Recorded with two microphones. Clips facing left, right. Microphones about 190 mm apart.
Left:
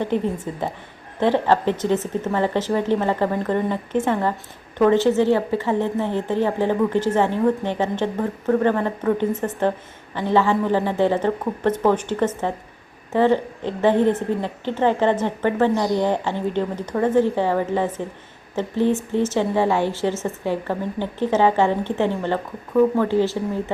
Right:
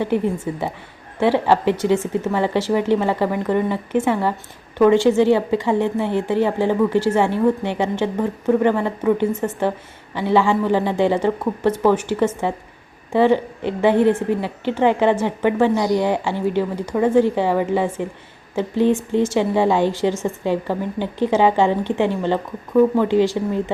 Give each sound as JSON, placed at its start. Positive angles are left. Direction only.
{"t": 0.0, "sound": "a woman's voice", "side_deg": -10}